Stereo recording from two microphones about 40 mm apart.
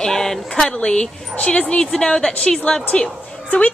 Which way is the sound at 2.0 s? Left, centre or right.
Centre.